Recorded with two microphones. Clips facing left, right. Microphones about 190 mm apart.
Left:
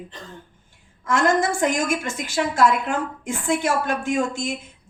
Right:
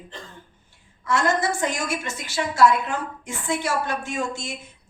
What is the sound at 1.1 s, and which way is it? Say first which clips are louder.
A woman's voice: left 3 dB; 50° left (ahead or behind).